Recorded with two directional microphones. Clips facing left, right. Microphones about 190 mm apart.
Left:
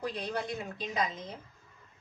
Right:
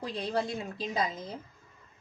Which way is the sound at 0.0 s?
25° right (ahead or behind).